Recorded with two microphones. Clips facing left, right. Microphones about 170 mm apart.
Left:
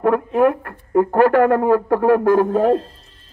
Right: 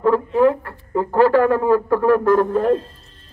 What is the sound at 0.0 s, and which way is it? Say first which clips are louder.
Speech: even; 55° left (ahead or behind).